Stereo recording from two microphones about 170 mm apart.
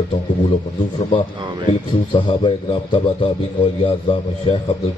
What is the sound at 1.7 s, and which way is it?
A man's voice, 30° left (ahead or behind).